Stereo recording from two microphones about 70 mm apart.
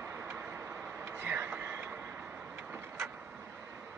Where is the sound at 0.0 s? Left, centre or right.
Right.